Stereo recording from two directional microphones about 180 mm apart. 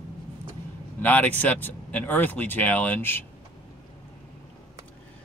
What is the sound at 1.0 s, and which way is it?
Speech, 10° left (ahead or behind).